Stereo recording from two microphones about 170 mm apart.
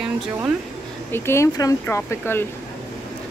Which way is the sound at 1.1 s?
15° left (ahead or behind).